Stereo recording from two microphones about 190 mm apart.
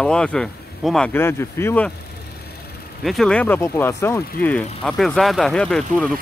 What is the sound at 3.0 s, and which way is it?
Speech, centre (ahead or behind).